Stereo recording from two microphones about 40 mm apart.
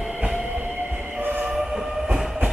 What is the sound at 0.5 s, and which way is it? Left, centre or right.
Train, right.